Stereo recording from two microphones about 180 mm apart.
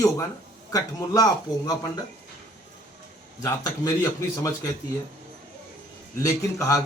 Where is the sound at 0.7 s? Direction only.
20° left (ahead or behind).